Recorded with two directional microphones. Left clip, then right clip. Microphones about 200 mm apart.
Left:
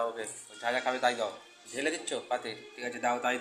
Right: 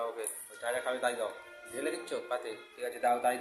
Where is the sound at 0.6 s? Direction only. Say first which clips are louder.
Left 4 dB; 5° left (ahead or behind).